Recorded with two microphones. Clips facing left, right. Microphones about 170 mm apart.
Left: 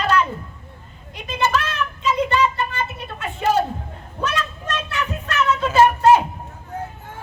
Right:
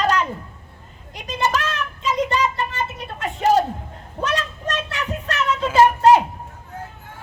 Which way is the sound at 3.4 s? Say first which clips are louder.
Right 2 dB; 40° right (ahead or behind).